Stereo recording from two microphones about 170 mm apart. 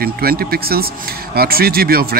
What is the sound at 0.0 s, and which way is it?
Speech, 60° right (ahead or behind).